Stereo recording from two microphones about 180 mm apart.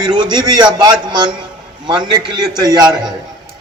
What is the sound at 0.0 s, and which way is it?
A man's voice, 25° right (ahead or behind).